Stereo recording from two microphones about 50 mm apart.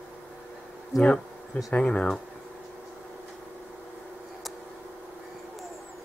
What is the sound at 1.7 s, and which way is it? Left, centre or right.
Speech, left.